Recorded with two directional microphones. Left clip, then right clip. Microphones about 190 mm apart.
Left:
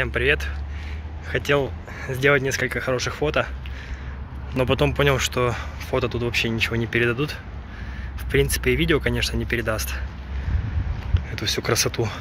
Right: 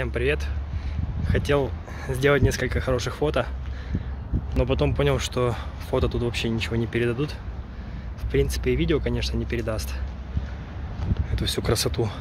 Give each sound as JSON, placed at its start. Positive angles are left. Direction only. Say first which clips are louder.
{"t": 0.0, "sound": "speech", "louder": "left 4 dB", "side_deg": -5}
{"t": 4.6, "sound": "speech", "louder": "left 4 dB", "side_deg": 0}
{"t": 11.3, "sound": "speech", "louder": "left 3 dB", "side_deg": -15}